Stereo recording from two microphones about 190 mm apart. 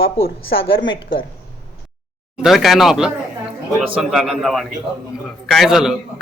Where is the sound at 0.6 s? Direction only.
30° left (ahead or behind).